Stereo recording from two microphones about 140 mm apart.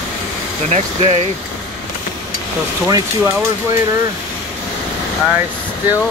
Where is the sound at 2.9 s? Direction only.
25° right (ahead or behind).